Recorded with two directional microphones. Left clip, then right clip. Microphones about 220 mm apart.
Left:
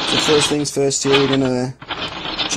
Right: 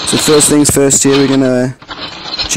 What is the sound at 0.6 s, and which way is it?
Speech, 50° right (ahead or behind).